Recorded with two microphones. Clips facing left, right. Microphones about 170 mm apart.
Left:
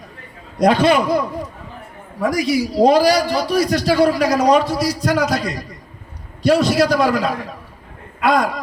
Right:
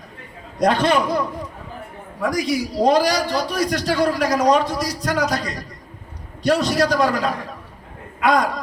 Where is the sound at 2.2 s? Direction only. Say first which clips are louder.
Left 3 dB; 10° left (ahead or behind).